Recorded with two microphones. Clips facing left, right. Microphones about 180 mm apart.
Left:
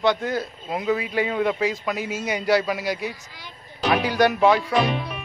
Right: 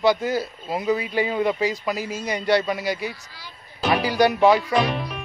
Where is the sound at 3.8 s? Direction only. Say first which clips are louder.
Even; centre (ahead or behind).